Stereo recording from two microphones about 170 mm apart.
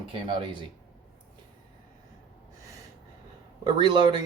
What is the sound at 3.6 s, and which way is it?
Speech, 25° right (ahead or behind).